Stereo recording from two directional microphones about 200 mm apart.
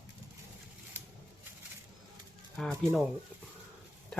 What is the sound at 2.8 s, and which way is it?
Speech, centre (ahead or behind).